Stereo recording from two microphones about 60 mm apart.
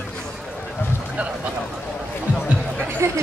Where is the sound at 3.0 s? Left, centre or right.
Right.